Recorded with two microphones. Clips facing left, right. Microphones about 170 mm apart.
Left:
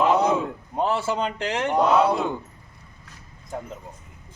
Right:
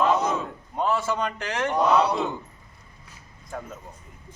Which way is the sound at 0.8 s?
30° left (ahead or behind).